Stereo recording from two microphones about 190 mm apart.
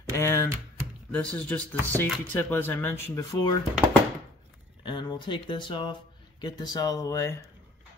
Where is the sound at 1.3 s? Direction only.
5° left (ahead or behind).